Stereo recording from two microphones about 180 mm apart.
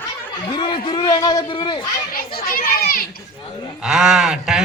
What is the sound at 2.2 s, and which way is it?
Children playing, 55° left (ahead or behind).